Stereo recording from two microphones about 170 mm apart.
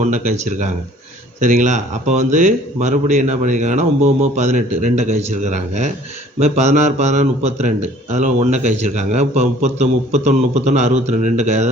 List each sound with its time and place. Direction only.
0.0 s a man's voice: 45° right (ahead or behind)